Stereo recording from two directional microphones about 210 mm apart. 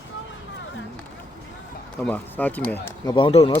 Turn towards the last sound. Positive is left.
turn(degrees=25)  # may be behind; listen again after turning